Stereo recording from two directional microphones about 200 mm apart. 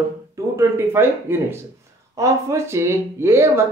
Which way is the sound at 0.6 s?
10° right (ahead or behind).